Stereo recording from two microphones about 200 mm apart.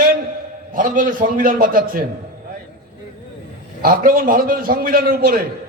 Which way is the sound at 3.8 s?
45° right (ahead or behind).